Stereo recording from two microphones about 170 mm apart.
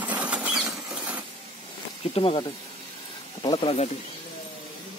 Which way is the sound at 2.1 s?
35° left (ahead or behind).